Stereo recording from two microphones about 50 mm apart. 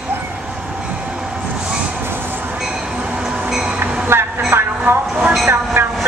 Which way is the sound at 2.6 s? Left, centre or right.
Centre.